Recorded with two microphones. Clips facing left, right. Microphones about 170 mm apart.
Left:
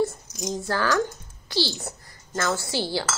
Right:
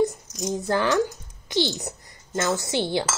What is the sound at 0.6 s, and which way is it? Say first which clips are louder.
A woman's voice: right 2 dB; 20° right (ahead or behind).